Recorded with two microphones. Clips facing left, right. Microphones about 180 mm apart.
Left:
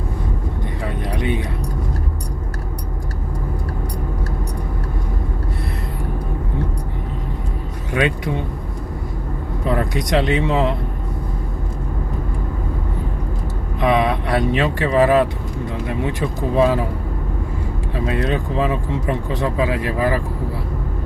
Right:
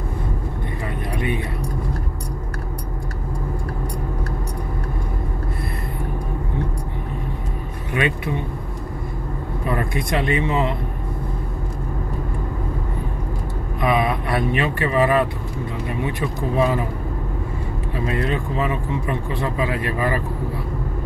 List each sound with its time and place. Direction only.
1.1 s vehicle: 85° left
9.7 s speech: 80° left
13.7 s speech: 80° left
17.9 s speech: 85° left